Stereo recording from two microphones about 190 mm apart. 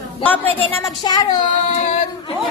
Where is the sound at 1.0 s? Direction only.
20° left (ahead or behind).